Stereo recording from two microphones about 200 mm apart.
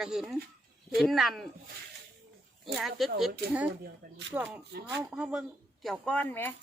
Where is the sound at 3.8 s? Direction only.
60° right (ahead or behind).